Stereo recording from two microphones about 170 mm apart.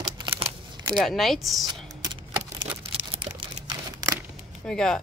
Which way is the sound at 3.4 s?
20° right (ahead or behind).